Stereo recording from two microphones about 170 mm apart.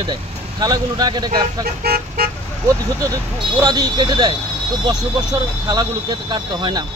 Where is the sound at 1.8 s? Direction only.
65° right (ahead or behind).